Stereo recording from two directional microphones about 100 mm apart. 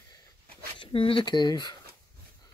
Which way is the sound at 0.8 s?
60° left (ahead or behind).